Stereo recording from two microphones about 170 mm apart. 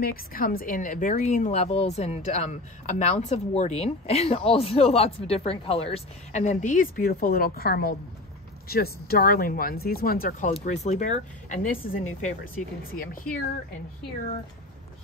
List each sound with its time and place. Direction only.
0.0 s speech: 60° left (ahead or behind)
10.5 s speech: 40° left (ahead or behind)
12.9 s speech: 55° left (ahead or behind)